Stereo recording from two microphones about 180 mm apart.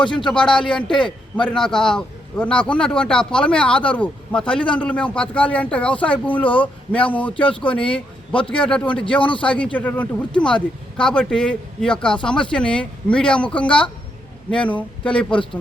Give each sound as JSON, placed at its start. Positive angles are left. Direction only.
{"t": 0.3, "sound": "a man's voice", "side_deg": 5}
{"t": 7.7, "sound": "a man's voice", "side_deg": 30}
{"t": 8.6, "sound": "a man's voice", "side_deg": 5}